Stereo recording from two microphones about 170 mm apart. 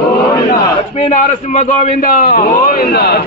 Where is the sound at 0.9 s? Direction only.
45° left (ahead or behind).